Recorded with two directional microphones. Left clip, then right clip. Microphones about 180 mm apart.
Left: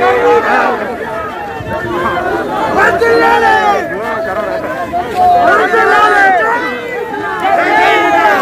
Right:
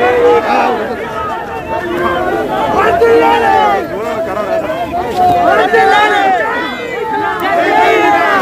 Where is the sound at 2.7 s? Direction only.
60° left (ahead or behind).